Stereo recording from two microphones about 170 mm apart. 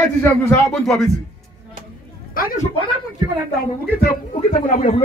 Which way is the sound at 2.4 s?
55° left (ahead or behind).